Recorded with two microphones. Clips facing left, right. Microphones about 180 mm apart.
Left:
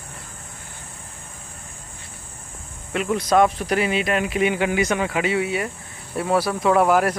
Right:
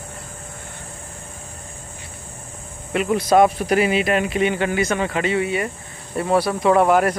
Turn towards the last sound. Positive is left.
turn(degrees=0)  # may be behind; listen again after turning